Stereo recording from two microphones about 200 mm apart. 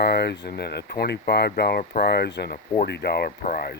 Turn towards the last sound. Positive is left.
turn(degrees=45)  # may be behind; listen again after turning